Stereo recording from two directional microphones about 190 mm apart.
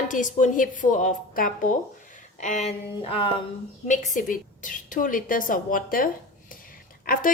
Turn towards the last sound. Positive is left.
turn(degrees=50)  # may be behind; listen again after turning